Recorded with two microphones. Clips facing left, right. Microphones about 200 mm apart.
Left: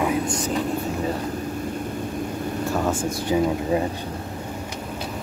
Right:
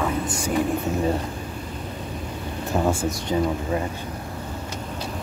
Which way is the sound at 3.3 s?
10° left (ahead or behind).